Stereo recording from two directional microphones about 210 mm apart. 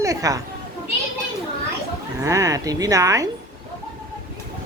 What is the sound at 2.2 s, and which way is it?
A woman's voice, 15° right (ahead or behind).